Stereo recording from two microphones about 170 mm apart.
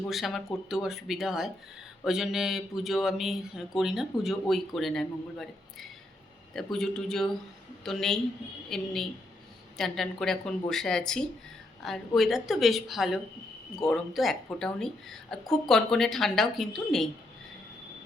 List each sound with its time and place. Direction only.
0.1 s speech: centre (ahead or behind)
6.5 s speech: 5° left (ahead or behind)